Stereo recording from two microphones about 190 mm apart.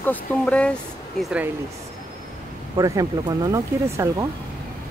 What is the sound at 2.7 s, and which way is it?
Speech, 20° right (ahead or behind).